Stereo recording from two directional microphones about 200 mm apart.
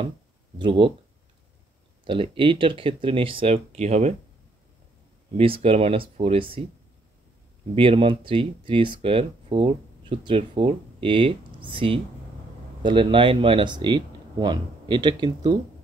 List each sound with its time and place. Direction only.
0.6 s speech: 25° right (ahead or behind)
2.0 s speech: 25° right (ahead or behind)
5.4 s speech: 30° right (ahead or behind)
7.7 s speech: 25° right (ahead or behind)